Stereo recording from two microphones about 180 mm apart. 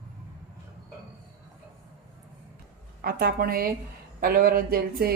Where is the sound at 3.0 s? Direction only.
55° right (ahead or behind).